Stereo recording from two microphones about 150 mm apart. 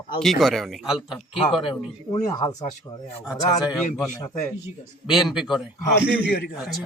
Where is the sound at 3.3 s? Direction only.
5° right (ahead or behind).